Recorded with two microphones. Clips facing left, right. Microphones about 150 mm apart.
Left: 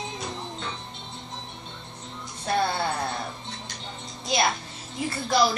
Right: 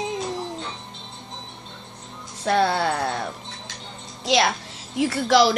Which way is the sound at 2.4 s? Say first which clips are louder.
Right 5 dB; 75° right (ahead or behind).